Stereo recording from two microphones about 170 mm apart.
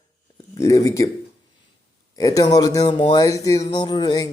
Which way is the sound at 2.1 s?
20° left (ahead or behind).